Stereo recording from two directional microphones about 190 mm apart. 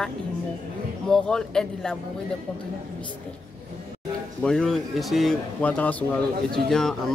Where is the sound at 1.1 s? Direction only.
5° left (ahead or behind).